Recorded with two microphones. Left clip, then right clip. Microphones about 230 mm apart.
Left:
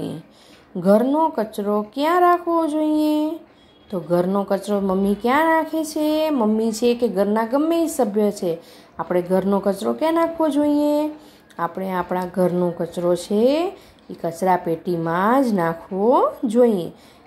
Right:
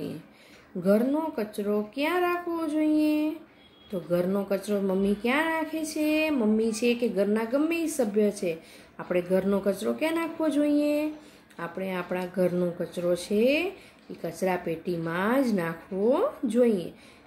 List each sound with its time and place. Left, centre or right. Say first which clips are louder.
0.8 s a woman's voice: left 8 dB; centre